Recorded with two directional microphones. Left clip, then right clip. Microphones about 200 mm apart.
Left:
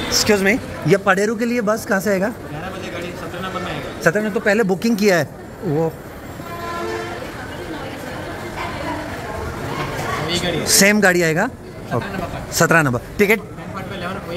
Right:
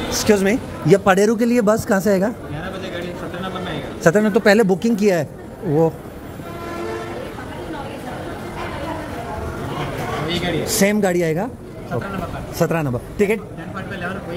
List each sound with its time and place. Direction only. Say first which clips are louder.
0.1 s a man's voice: left 1 dB; 15° right (ahead or behind)
4.1 s speech: right 4 dB; 35° right (ahead or behind)
4.6 s speech: right 1 dB; 10° right (ahead or behind)
10.2 s speech: left 1 dB; centre (ahead or behind)
12.5 s a man's voice: left 6 dB; 5° left (ahead or behind)